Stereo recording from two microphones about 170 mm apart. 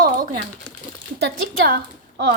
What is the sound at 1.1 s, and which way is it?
A woman's voice, 70° right (ahead or behind).